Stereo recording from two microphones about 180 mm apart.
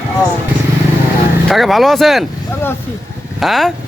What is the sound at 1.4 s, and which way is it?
Speech, centre (ahead or behind).